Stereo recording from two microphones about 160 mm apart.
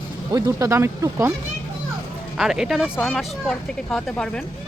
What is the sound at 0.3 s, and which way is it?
Speech, 20° right (ahead or behind).